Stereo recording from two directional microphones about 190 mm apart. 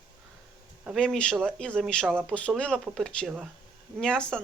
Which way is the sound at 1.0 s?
5° left (ahead or behind).